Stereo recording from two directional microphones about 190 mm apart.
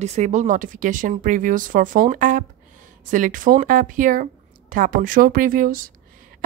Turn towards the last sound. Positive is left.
turn(degrees=-45)  # may be behind; listen again after turning